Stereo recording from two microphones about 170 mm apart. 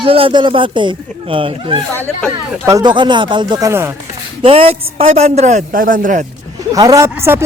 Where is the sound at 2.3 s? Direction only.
20° right (ahead or behind).